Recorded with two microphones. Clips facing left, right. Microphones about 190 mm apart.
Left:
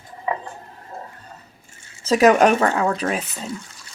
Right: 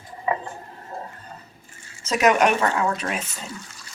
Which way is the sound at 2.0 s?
35° left (ahead or behind).